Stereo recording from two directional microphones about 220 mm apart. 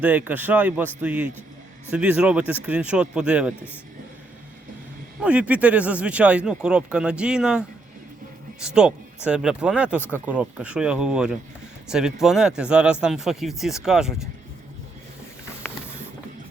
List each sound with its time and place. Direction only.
0.0 s a man's voice: 5° right (ahead or behind)
5.2 s speech: 5° right (ahead or behind)
8.6 s speech: 5° right (ahead or behind)